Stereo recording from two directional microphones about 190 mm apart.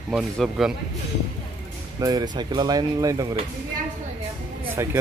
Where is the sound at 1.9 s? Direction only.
20° right (ahead or behind).